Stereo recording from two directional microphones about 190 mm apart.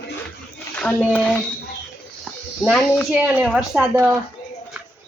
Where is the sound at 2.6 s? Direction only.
5° left (ahead or behind).